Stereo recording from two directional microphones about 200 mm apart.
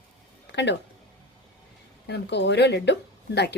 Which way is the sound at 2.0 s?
60° left (ahead or behind).